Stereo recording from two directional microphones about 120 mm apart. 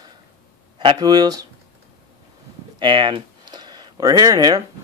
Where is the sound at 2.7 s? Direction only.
40° right (ahead or behind).